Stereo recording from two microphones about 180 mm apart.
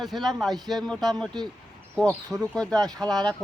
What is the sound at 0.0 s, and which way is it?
Speech, centre (ahead or behind).